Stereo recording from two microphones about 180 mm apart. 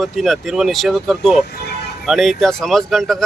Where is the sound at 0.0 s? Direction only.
Centre (ahead or behind).